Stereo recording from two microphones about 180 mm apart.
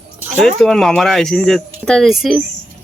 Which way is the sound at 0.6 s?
5° left (ahead or behind).